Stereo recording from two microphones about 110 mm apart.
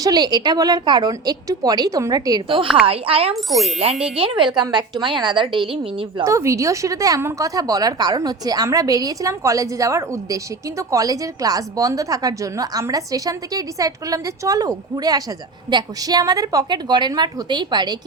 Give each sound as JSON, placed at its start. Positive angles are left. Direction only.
{"t": 0.0, "sound": "a woman's voice", "side_deg": -35}
{"t": 2.8, "sound": "speech", "side_deg": -60}
{"t": 3.3, "sound": "a child's voice", "side_deg": 0}
{"t": 4.1, "sound": "speech", "side_deg": -60}
{"t": 4.5, "sound": "a woman's voice", "side_deg": -40}
{"t": 6.2, "sound": "a woman's voice", "side_deg": -30}